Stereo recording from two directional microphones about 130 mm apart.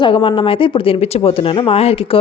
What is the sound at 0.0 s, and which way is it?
Speech, 40° left (ahead or behind).